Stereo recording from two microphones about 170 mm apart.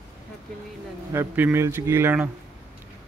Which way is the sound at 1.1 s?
10° right (ahead or behind).